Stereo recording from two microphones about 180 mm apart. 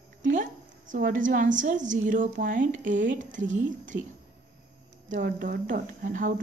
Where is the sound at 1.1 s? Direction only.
45° right (ahead or behind).